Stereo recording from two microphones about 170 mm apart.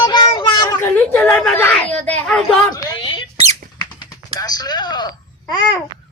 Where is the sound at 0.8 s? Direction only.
10° left (ahead or behind).